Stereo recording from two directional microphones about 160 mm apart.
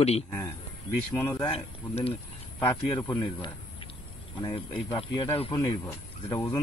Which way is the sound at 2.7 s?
25° left (ahead or behind).